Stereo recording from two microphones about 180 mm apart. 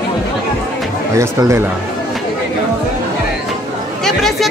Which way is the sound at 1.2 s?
15° right (ahead or behind).